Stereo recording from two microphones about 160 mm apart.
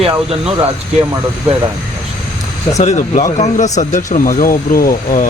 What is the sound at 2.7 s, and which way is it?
Speech, 45° left (ahead or behind).